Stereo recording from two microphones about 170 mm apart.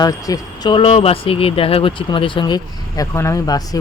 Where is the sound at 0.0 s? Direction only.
20° left (ahead or behind).